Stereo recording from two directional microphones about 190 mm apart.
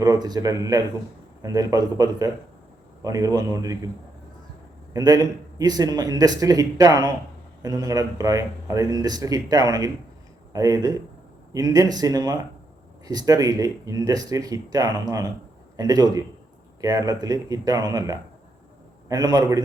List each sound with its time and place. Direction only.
0.0 s a man's voice: 20° right (ahead or behind)
4.9 s speech: 20° right (ahead or behind)